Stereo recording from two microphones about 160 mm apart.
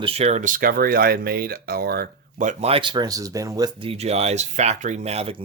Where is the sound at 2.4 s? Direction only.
45° right (ahead or behind); by 3.7 s 20° right (ahead or behind).